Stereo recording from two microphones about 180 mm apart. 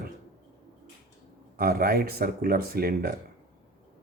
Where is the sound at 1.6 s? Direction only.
55° right (ahead or behind).